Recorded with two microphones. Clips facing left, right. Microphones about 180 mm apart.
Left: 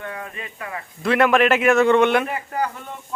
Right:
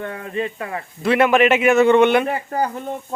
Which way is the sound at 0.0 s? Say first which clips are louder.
Right 8 dB; 35° right (ahead or behind).